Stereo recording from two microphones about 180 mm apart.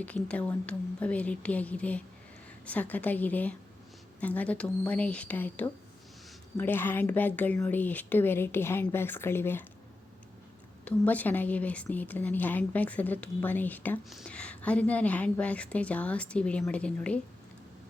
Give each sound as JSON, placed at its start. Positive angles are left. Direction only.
{"t": 0.0, "sound": "a woman's voice", "side_deg": 10}
{"t": 10.8, "sound": "a woman's voice", "side_deg": 10}